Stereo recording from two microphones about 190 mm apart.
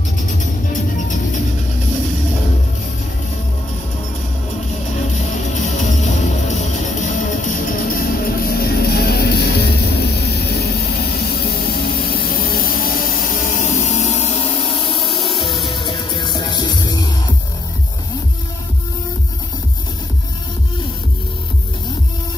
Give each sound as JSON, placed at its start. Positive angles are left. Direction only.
{"t": 5.8, "sound": "music", "side_deg": 40}
{"t": 15.6, "sound": "music", "side_deg": 25}